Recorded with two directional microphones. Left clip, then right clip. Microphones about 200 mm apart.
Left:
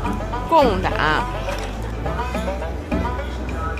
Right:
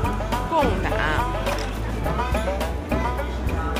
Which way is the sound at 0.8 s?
20° left (ahead or behind).